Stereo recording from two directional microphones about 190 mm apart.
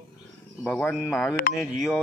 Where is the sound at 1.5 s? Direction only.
50° left (ahead or behind).